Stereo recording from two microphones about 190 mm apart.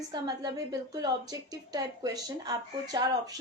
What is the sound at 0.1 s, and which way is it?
A woman's voice, 20° right (ahead or behind).